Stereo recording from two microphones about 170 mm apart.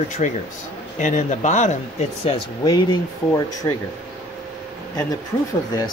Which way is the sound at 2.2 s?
35° left (ahead or behind).